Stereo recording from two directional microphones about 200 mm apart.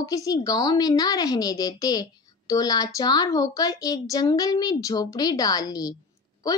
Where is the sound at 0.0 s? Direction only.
15° left (ahead or behind).